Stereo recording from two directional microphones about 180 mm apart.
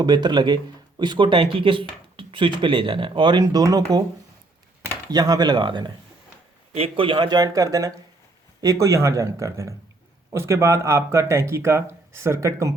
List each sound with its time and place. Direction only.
0.0 s speech: 25° right (ahead or behind)
5.1 s speech: 20° right (ahead or behind)